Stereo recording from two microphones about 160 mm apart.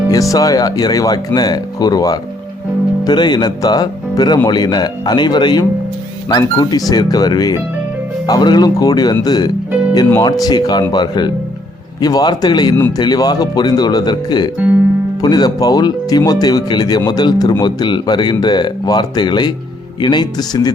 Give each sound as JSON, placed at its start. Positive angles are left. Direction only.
{"t": 0.1, "sound": "speech", "side_deg": 20}